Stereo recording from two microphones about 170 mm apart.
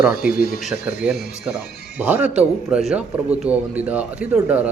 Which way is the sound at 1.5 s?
5° right (ahead or behind).